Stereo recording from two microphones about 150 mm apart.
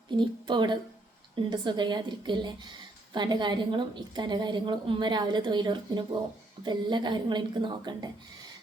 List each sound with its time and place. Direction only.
0.2 s a woman's voice: 30° right (ahead or behind)